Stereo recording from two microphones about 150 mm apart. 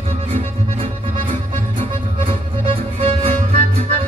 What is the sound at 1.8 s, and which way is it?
Music, 35° right (ahead or behind).